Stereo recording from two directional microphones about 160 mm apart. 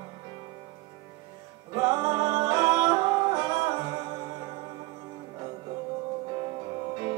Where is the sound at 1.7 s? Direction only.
25° right (ahead or behind).